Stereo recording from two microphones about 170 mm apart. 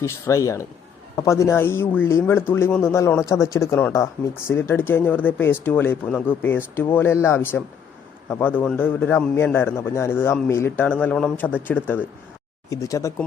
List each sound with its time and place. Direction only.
0.0 s speech: 20° left (ahead or behind)